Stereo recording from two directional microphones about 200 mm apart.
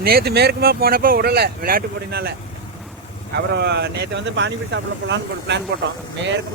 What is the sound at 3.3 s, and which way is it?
Speech, 55° right (ahead or behind).